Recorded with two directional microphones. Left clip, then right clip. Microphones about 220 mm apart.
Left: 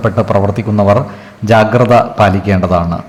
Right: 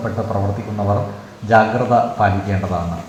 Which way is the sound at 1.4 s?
40° left (ahead or behind).